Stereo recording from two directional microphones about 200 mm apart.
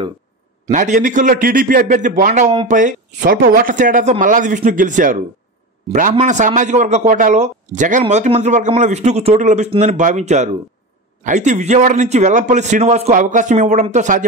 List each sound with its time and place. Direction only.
0.7 s a man's voice: 35° right (ahead or behind)